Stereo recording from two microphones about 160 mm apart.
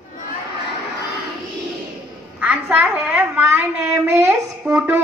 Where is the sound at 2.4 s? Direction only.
10° right (ahead or behind).